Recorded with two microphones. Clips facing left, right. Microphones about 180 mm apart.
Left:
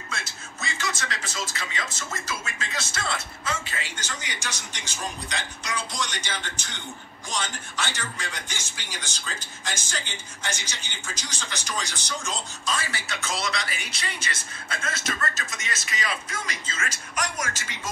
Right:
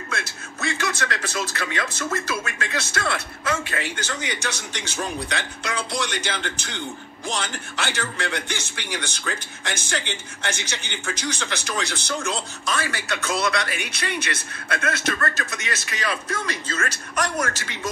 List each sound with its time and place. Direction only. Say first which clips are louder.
0.1 s a man's voice: right 4 dB; 60° right (ahead or behind)